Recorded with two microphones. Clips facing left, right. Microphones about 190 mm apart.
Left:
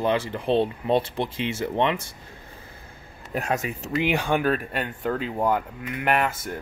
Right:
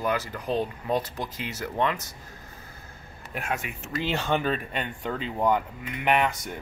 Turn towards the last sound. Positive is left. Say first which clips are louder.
# left 1 dB
turn(degrees=5)  # may be behind; listen again after turning